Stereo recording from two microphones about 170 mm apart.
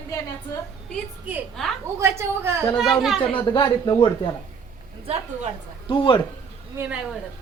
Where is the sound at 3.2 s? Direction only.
30° left (ahead or behind).